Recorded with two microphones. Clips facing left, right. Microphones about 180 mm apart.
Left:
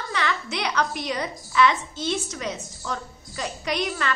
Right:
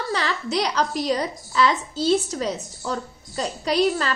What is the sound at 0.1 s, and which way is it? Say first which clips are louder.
A woman's voice: right 2 dB; 35° right (ahead or behind).